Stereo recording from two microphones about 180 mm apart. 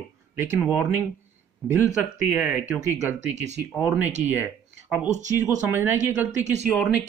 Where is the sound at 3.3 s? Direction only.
40° right (ahead or behind).